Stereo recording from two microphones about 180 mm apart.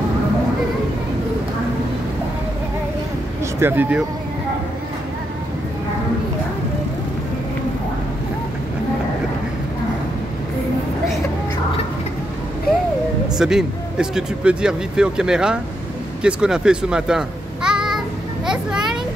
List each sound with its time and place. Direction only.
3.5 s speech: 10° right (ahead or behind)
13.4 s speech: 5° right (ahead or behind)
18.5 s children playing: 5° right (ahead or behind)